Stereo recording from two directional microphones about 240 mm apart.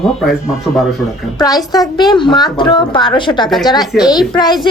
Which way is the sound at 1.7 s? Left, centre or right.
Centre.